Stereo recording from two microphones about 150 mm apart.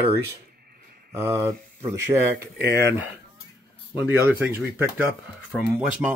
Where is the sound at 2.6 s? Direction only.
90° right.